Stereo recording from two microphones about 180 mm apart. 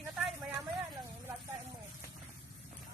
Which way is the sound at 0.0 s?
Centre (ahead or behind).